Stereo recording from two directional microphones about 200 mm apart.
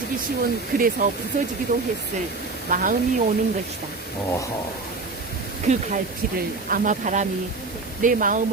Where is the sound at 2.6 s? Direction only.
40° right (ahead or behind).